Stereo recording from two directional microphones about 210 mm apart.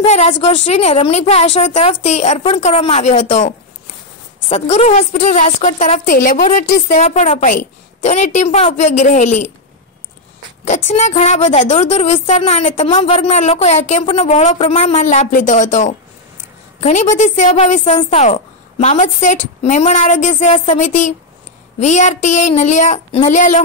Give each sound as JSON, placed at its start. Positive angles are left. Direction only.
{"t": 0.0, "sound": "a woman's voice", "side_deg": 30}
{"t": 10.6, "sound": "a woman's voice", "side_deg": 35}